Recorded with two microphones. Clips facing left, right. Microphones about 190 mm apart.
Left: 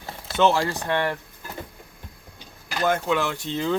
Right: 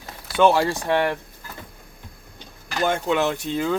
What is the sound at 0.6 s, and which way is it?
Speech, 15° right (ahead or behind).